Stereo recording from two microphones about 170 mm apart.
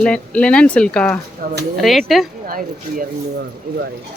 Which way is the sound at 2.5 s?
55° right (ahead or behind).